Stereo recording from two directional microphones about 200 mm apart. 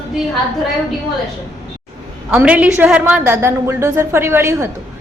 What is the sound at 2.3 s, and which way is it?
A woman's voice, 5° right (ahead or behind).